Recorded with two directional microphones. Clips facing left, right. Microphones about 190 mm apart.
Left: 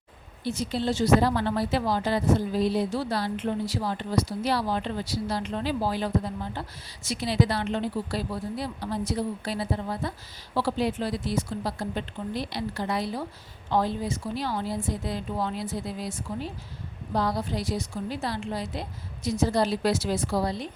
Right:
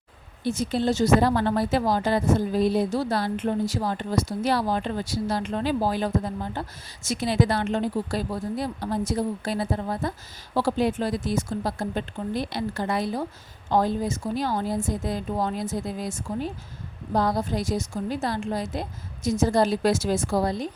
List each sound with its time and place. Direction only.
0.4 s speech: 50° right (ahead or behind)